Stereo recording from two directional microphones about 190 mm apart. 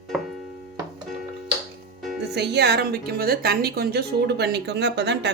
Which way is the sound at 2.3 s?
60° right (ahead or behind).